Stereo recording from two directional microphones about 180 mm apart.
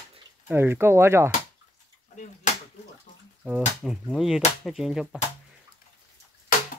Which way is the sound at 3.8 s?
Centre (ahead or behind).